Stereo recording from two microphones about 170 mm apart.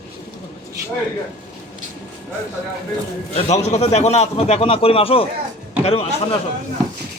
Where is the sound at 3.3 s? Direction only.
40° left (ahead or behind).